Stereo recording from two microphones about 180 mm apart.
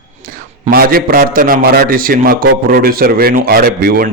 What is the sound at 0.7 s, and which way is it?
A man's voice, 55° right (ahead or behind).